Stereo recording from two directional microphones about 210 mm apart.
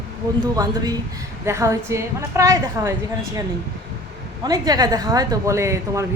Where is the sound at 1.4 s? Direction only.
15° right (ahead or behind).